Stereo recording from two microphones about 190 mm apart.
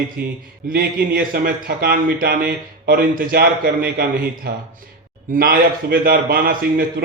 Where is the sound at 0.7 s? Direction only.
50° right (ahead or behind).